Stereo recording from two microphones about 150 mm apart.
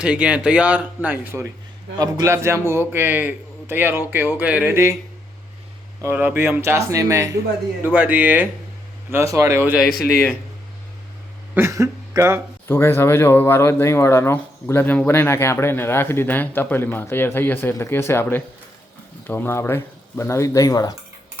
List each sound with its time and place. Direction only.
0.0 s a man's voice: 5° right (ahead or behind)
6.0 s speech: 15° right (ahead or behind)
7.9 s a man's voice: 10° right (ahead or behind)
9.9 s a man's voice: 90° left
11.5 s speech: 20° right (ahead or behind)
12.6 s speech: 15° left (ahead or behind)